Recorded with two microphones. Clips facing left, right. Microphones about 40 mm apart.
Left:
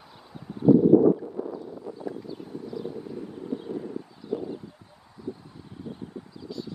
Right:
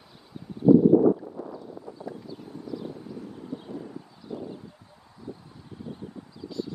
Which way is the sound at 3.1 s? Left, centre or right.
Centre.